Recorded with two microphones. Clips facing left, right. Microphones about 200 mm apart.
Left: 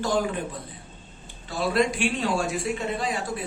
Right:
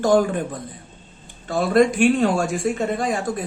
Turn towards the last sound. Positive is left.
turn(degrees=-45)  # may be behind; listen again after turning